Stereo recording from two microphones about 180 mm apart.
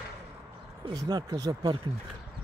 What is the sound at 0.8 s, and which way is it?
Speech, 20° right (ahead or behind).